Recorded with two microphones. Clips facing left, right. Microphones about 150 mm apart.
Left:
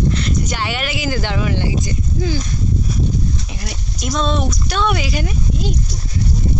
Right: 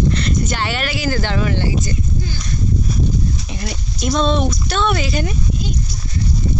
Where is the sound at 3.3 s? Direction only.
Centre (ahead or behind).